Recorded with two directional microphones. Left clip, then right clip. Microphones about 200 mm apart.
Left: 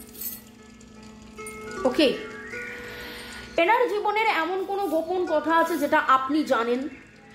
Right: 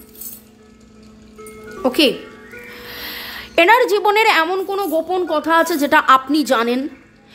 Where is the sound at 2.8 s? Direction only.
50° right (ahead or behind).